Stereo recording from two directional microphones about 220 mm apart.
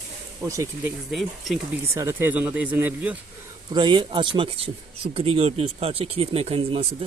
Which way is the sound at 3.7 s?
20° right (ahead or behind).